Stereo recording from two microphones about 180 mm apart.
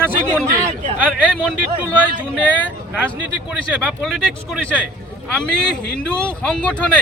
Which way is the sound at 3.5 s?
5° right (ahead or behind).